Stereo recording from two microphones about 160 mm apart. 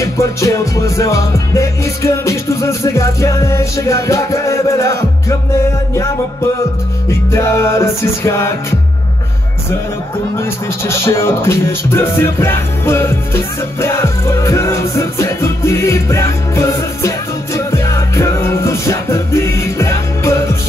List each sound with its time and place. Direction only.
0.0 s music: 20° left (ahead or behind)
7.1 s music: 15° left (ahead or behind)
10.3 s music: 15° left (ahead or behind)